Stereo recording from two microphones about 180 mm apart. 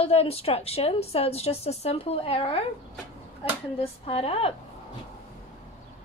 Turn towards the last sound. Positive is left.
turn(degrees=35)  # may be behind; listen again after turning